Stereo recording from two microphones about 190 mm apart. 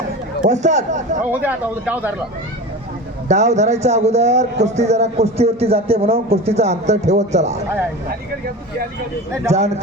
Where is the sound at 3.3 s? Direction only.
35° right (ahead or behind).